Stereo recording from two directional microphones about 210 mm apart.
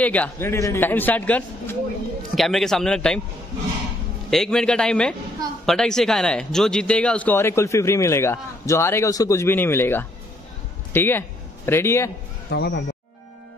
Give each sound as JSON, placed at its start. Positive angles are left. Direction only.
{"t": 0.0, "sound": "a man's voice", "side_deg": 5}
{"t": 4.3, "sound": "a man's voice", "side_deg": 0}
{"t": 12.4, "sound": "speech", "side_deg": 50}